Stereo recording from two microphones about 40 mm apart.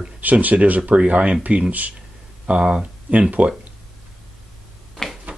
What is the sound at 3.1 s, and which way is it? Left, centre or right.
Speech, right.